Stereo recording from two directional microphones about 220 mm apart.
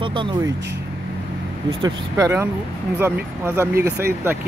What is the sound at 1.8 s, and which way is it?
Speech, 15° right (ahead or behind).